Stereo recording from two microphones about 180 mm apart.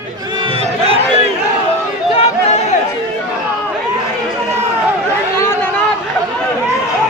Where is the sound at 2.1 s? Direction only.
35° left (ahead or behind).